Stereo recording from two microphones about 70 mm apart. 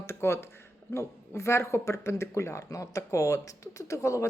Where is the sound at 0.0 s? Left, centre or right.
Left.